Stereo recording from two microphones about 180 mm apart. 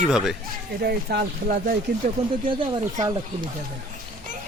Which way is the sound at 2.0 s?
45° right (ahead or behind).